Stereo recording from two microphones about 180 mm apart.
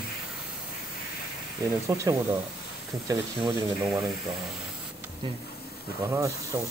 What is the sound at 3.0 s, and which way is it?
Speech, 25° right (ahead or behind).